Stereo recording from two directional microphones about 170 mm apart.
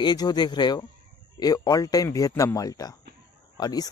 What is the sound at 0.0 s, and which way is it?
Speech, 25° left (ahead or behind).